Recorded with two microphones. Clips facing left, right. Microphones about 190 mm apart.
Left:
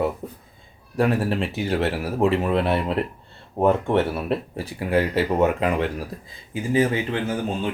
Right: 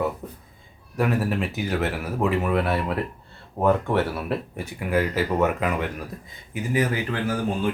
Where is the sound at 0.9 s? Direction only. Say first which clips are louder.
Left 2 dB; 30° left (ahead or behind).